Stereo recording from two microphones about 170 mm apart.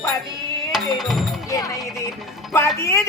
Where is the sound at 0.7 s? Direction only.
Centre (ahead or behind).